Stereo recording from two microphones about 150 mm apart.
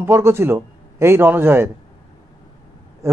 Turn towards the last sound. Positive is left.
turn(degrees=-20)  # may be behind; listen again after turning